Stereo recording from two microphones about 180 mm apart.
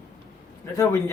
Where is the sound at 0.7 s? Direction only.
15° left (ahead or behind).